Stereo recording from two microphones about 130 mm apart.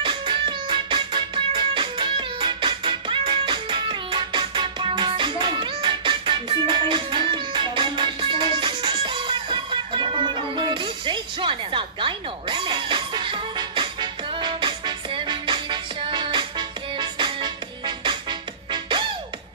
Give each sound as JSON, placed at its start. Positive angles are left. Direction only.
{"t": 0.0, "sound": "music", "side_deg": -40}